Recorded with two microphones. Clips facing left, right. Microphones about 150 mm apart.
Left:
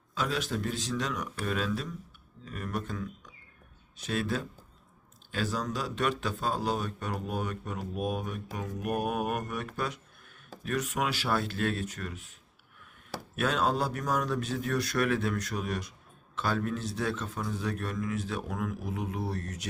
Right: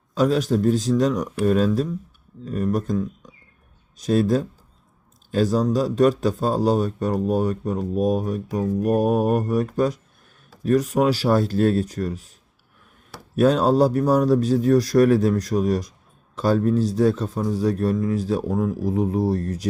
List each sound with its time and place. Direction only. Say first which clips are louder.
0.1 s speech: right 12 dB; 40° right (ahead or behind)
13.3 s speech: right 11 dB; 40° right (ahead or behind)